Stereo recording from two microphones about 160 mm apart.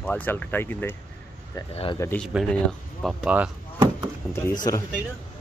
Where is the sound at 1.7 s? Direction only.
35° left (ahead or behind).